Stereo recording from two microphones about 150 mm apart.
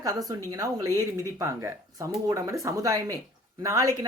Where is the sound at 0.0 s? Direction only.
25° right (ahead or behind).